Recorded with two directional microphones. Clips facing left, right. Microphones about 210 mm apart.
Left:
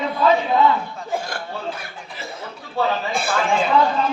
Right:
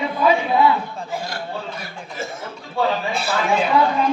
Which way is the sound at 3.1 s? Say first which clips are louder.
Even; 50° left (ahead or behind).